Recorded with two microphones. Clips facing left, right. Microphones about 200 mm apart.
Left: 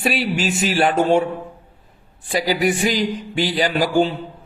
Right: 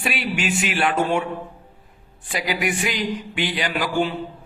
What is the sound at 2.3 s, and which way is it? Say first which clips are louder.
A man's voice: left 6 dB; 35° left (ahead or behind).